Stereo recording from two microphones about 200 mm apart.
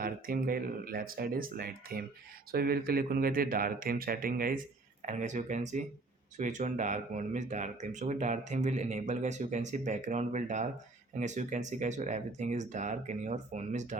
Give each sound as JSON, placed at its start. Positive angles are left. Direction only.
{"t": 0.0, "sound": "speech", "side_deg": -45}